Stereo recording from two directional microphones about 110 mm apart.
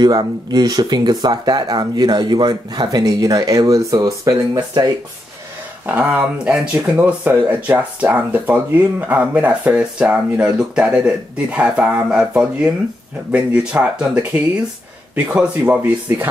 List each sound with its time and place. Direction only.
0.0 s speech: 40° right (ahead or behind)
5.9 s speech: 10° right (ahead or behind)